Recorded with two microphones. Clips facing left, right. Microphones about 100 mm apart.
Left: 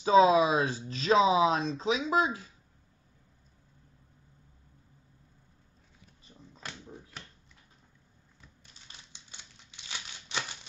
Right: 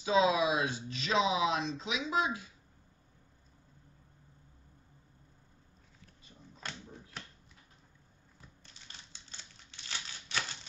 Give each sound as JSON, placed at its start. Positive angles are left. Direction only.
{"t": 0.0, "sound": "speech", "side_deg": 40}
{"t": 6.6, "sound": "a sound", "side_deg": 5}
{"t": 9.1, "sound": "scissors", "side_deg": 15}